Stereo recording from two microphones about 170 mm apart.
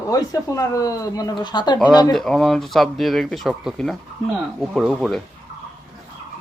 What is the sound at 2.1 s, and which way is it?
Speech, centre (ahead or behind).